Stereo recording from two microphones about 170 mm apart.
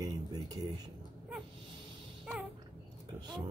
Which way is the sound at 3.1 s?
25° right (ahead or behind).